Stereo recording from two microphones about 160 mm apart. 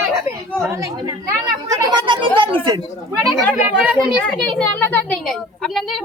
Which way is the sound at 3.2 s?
5° right (ahead or behind).